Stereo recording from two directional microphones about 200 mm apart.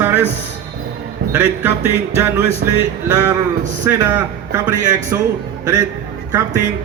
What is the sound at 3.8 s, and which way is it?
Music, 15° right (ahead or behind).